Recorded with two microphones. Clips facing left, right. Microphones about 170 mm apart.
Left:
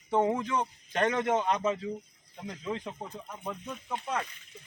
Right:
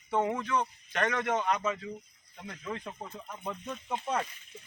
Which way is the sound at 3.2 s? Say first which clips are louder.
Even; 5° left (ahead or behind).